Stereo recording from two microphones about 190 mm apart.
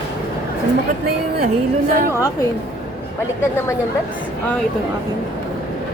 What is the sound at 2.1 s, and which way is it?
Speech, 15° left (ahead or behind).